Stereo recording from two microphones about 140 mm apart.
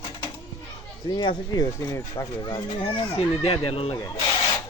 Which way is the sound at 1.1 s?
30° left (ahead or behind).